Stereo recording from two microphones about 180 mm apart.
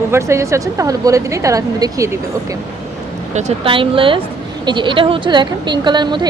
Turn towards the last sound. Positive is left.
turn(degrees=-25)  # may be behind; listen again after turning